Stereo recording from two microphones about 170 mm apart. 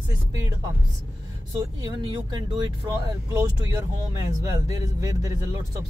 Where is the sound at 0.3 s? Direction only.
20° right (ahead or behind).